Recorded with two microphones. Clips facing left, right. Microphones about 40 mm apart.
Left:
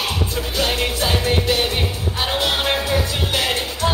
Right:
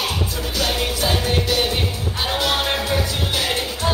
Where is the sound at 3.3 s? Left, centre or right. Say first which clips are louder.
Left 3 dB; left.